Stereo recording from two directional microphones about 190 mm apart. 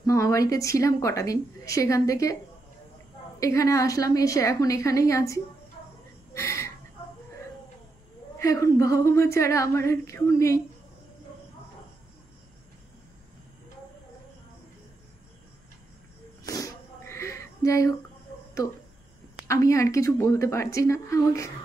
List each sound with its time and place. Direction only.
0.0 s a woman's voice: 15° left (ahead or behind)
3.3 s a woman's voice: 15° left (ahead or behind)
6.3 s chicken: 15° left (ahead or behind)
8.4 s a woman's voice: 15° left (ahead or behind)
16.4 s a sound: 20° left (ahead or behind)
18.6 s a woman's voice: 20° left (ahead or behind)